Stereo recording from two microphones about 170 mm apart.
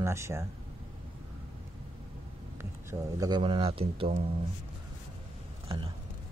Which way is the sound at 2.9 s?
20° right (ahead or behind).